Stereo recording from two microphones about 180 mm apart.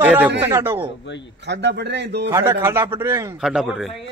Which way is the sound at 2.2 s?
15° right (ahead or behind).